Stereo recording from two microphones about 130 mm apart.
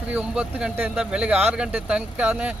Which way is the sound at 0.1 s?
10° right (ahead or behind).